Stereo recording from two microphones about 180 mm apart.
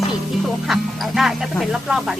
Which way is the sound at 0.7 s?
Centre (ahead or behind).